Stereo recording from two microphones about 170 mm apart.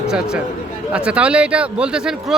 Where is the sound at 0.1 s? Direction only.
5° right (ahead or behind).